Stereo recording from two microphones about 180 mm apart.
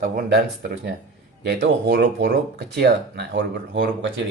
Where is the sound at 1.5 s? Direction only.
70° right (ahead or behind).